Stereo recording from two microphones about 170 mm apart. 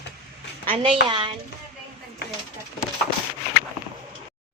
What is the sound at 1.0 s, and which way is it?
Speech, 30° right (ahead or behind).